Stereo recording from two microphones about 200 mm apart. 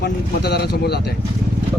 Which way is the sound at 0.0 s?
55° left (ahead or behind).